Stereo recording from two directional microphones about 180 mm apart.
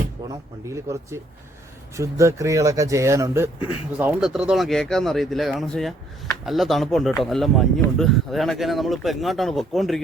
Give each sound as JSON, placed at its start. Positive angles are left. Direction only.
{"t": 0.2, "sound": "a sound", "side_deg": -20}
{"t": 0.7, "sound": "speech", "side_deg": -15}
{"t": 3.9, "sound": "speech", "side_deg": -5}